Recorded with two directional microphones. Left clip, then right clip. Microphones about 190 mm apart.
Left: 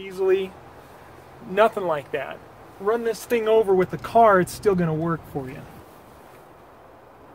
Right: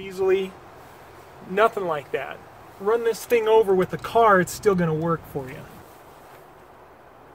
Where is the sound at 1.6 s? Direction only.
25° left (ahead or behind).